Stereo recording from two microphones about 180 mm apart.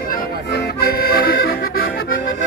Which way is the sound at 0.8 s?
60° left (ahead or behind).